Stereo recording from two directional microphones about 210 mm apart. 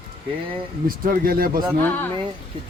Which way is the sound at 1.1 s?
45° right (ahead or behind).